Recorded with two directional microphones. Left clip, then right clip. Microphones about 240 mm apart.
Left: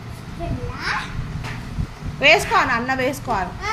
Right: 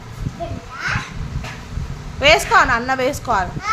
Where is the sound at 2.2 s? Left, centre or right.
Centre.